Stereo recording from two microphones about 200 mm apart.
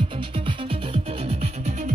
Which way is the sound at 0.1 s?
25° right (ahead or behind).